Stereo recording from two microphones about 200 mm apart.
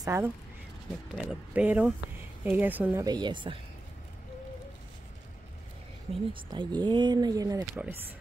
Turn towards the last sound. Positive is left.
turn(degrees=-15)  # may be behind; listen again after turning